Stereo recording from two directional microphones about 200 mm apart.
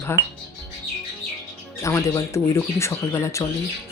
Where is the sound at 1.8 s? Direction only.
15° left (ahead or behind).